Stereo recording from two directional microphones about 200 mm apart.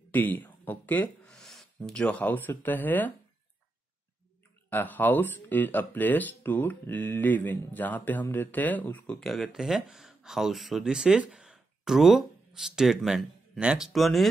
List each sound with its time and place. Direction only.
0.1 s speech: 10° left (ahead or behind)
4.6 s speech: 10° left (ahead or behind)